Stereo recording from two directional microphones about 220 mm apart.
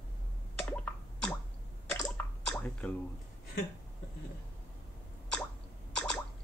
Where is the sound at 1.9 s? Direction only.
10° left (ahead or behind).